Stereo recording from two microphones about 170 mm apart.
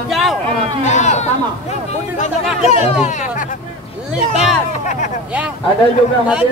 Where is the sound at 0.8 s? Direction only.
45° left (ahead or behind).